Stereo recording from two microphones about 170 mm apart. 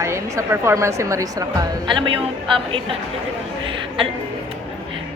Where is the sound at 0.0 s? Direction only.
15° right (ahead or behind).